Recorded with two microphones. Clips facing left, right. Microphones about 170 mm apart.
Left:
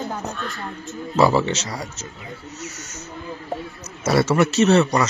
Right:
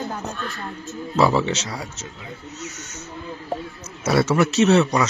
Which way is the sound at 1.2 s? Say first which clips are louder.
Left 1 dB; centre (ahead or behind).